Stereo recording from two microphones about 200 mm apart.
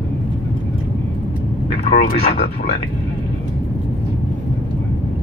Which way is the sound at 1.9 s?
30° left (ahead or behind).